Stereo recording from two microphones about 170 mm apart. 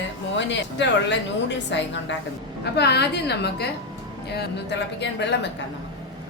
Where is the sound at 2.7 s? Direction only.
80° left.